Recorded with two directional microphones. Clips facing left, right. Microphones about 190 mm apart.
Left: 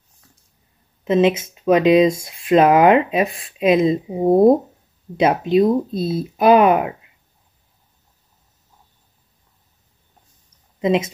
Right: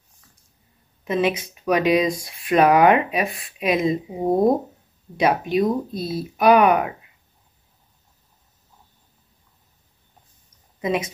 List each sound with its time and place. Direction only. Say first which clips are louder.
1.0 s speech: left 6 dB; 25° left (ahead or behind)
5.2 s speech: left 4 dB; 25° left (ahead or behind)
10.8 s a woman's voice: left 5 dB; 25° left (ahead or behind)